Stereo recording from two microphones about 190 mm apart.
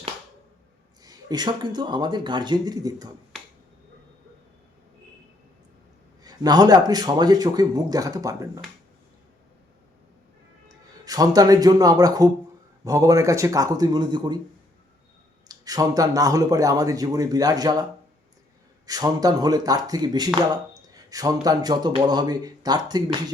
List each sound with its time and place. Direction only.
1.0 s speech: 20° right (ahead or behind)
3.3 s finger snapping: 5° left (ahead or behind)
6.2 s speech: 20° right (ahead or behind)
10.7 s speech: 20° right (ahead or behind)
15.4 s speech: 20° right (ahead or behind)
18.9 s speech: 20° right (ahead or behind)